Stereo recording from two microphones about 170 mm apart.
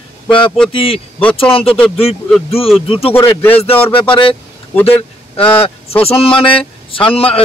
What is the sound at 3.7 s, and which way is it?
Speech, 10° left (ahead or behind).